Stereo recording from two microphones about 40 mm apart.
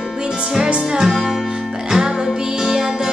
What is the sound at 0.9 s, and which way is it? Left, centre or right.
Music, centre.